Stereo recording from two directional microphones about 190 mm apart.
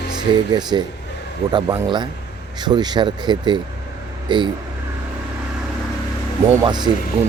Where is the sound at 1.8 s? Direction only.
25° right (ahead or behind).